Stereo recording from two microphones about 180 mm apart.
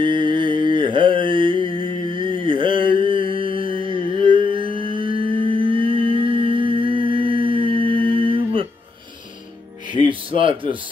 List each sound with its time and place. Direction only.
0.0 s mantra: 25° right (ahead or behind)
9.9 s speech: 30° right (ahead or behind)